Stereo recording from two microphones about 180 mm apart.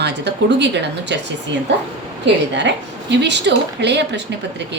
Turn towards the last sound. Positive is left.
turn(degrees=-75)  # may be behind; listen again after turning